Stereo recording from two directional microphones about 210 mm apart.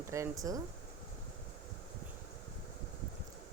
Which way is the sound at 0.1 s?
15° right (ahead or behind).